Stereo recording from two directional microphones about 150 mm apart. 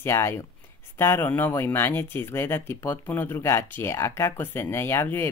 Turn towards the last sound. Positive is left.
turn(degrees=15)  # may be behind; listen again after turning